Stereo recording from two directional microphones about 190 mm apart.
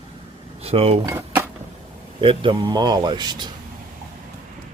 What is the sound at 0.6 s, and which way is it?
Speech, 30° right (ahead or behind).